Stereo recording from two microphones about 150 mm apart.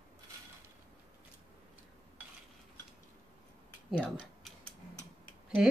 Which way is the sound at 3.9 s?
10° left (ahead or behind).